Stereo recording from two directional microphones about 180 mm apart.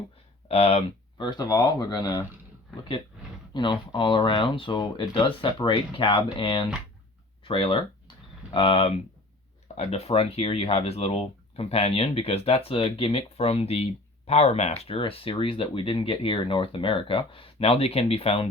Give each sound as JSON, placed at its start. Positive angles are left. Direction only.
{"t": 0.4, "sound": "speech", "side_deg": 35}
{"t": 3.5, "sound": "speech", "side_deg": 25}